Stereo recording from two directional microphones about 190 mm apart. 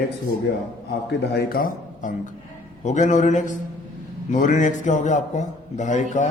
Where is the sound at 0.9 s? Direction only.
55° left (ahead or behind).